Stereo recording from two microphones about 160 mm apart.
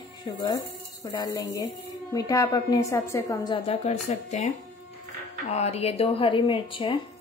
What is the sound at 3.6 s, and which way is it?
Speech, 40° left (ahead or behind).